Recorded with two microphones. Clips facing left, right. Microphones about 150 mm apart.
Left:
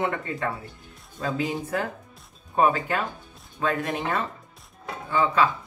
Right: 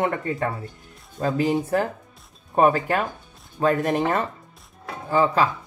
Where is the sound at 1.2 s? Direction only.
40° right (ahead or behind).